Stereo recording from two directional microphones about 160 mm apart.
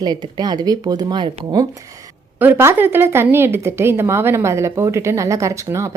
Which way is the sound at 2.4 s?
15° right (ahead or behind).